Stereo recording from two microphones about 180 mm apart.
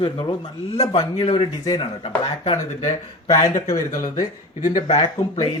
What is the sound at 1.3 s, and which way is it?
Speech, 35° left (ahead or behind).